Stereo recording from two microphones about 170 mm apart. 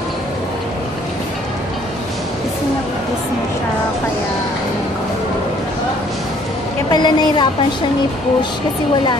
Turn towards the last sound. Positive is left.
turn(degrees=25)  # may be behind; listen again after turning